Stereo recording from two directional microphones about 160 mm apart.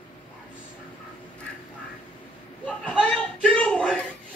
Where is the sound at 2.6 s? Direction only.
5° left (ahead or behind).